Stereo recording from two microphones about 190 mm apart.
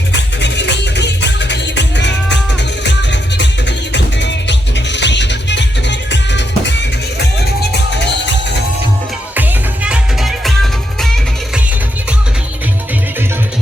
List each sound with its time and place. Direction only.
0.1 s music: 70° left (ahead or behind)
9.3 s music: 10° right (ahead or behind)